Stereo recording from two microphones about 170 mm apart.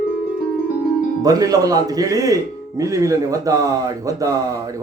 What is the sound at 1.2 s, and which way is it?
A man's voice, 20° right (ahead or behind).